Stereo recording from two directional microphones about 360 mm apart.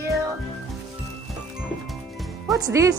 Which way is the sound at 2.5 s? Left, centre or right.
Centre.